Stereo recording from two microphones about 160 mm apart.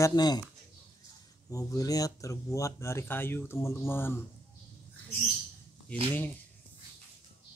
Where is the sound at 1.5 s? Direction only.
20° left (ahead or behind).